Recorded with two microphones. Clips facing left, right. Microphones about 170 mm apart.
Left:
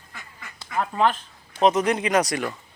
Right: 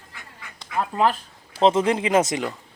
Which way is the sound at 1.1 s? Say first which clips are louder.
Right 2 dB; 30° right (ahead or behind).